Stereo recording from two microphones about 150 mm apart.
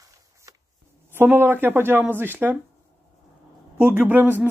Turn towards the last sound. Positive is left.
turn(degrees=-10)  # may be behind; listen again after turning